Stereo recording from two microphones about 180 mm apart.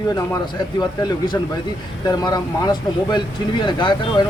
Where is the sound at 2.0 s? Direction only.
20° left (ahead or behind).